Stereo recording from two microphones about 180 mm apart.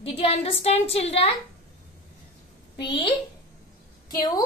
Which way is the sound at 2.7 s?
30° left (ahead or behind).